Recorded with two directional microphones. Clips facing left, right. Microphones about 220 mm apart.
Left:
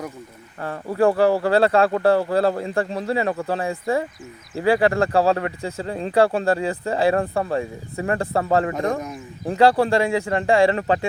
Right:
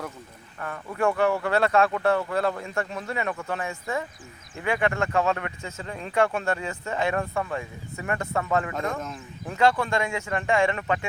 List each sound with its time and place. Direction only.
0.6 s speech: 30° left (ahead or behind)